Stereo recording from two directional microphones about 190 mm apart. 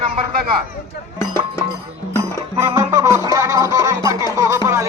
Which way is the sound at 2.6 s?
15° right (ahead or behind).